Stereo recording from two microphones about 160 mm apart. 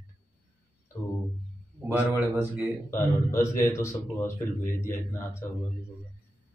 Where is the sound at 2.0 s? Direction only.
15° right (ahead or behind).